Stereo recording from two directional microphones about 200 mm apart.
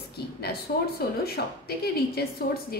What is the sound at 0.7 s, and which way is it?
Speech, 45° left (ahead or behind).